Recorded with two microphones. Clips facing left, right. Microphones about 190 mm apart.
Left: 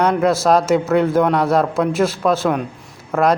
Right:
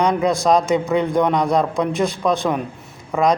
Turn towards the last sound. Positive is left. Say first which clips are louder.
# left 1 dB
turn(degrees=5)  # may be behind; listen again after turning